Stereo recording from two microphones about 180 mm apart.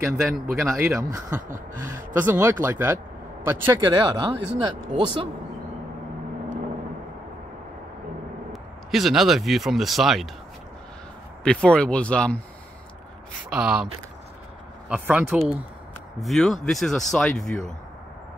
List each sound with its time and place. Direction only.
0.2 s speech: centre (ahead or behind)
0.9 s speech: 15° right (ahead or behind)
3.7 s speech: 25° right (ahead or behind)
8.9 s speech: centre (ahead or behind)
11.4 s speech: 5° left (ahead or behind)
13.5 s speech: 5° right (ahead or behind)
14.9 s speech: 10° right (ahead or behind)